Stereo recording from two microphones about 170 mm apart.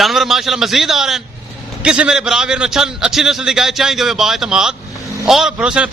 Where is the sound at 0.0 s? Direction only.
Centre (ahead or behind).